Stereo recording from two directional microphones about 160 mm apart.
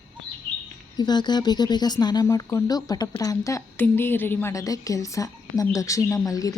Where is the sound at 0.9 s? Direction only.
25° left (ahead or behind).